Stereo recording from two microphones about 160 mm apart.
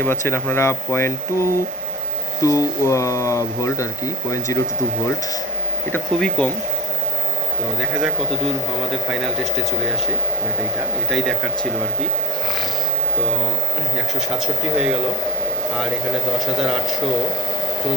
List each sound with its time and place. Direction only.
0.0 s speech: 15° left (ahead or behind)
5.9 s speech: 5° left (ahead or behind)